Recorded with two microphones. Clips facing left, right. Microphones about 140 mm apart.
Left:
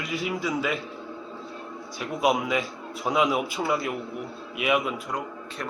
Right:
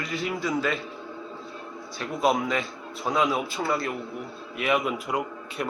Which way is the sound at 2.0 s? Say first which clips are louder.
Even; 10° left (ahead or behind).